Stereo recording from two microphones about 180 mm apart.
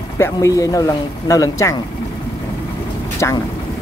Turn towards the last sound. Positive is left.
turn(degrees=15)  # may be behind; listen again after turning